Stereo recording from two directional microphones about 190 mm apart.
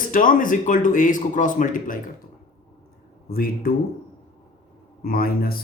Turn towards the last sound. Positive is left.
turn(degrees=50)  # may be behind; listen again after turning